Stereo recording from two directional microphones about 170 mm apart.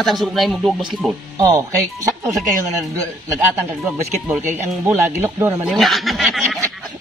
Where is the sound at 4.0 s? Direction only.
15° right (ahead or behind).